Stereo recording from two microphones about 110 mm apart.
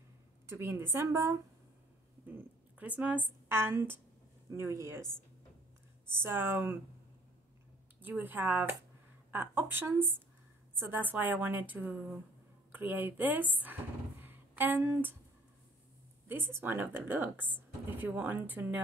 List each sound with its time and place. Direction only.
0.5 s a woman's voice: 25° right (ahead or behind)
2.2 s a woman's voice: 15° right (ahead or behind)
6.0 s a woman's voice: 20° right (ahead or behind)
8.0 s a woman's voice: 15° right (ahead or behind)
14.2 s a sound: 15° right (ahead or behind)
16.3 s speech: 20° right (ahead or behind)